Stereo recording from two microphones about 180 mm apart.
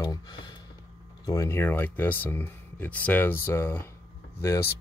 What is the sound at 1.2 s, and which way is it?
Speech, 20° left (ahead or behind).